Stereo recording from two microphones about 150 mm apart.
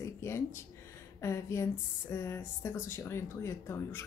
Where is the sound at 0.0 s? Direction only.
15° left (ahead or behind).